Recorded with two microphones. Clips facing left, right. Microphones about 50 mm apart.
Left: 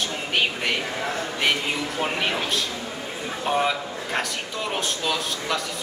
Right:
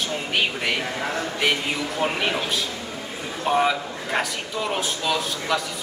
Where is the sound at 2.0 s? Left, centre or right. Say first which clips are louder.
Right 2 dB; centre.